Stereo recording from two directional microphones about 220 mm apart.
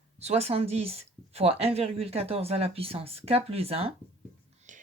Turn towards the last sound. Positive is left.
turn(degrees=-35)  # may be behind; listen again after turning